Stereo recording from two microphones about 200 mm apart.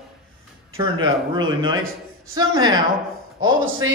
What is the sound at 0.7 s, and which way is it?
Speech, 20° right (ahead or behind).